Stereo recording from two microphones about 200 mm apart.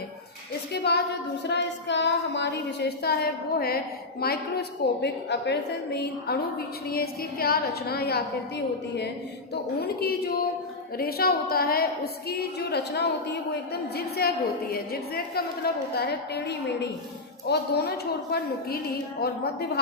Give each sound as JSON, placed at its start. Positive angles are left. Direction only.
{"t": 0.9, "sound": "child singing", "side_deg": 55}
{"t": 4.2, "sound": "a woman's voice", "side_deg": 50}
{"t": 12.3, "sound": "child singing", "side_deg": 55}
{"t": 13.9, "sound": "a woman's voice", "side_deg": 50}